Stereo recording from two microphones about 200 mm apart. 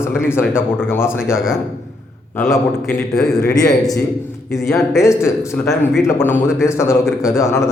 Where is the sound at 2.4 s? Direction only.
Centre (ahead or behind).